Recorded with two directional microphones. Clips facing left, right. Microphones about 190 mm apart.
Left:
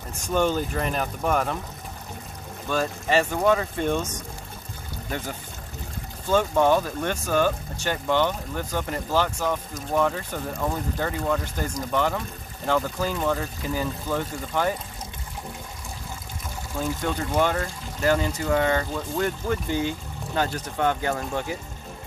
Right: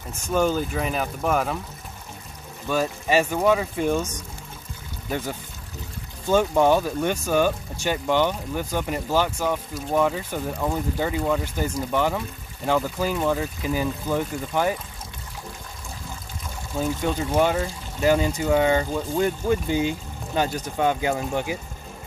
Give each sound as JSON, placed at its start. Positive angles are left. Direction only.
{"t": 0.3, "sound": "speech", "side_deg": -5}
{"t": 2.7, "sound": "speech", "side_deg": -10}
{"t": 6.3, "sound": "speech", "side_deg": -15}
{"t": 16.7, "sound": "speech", "side_deg": -20}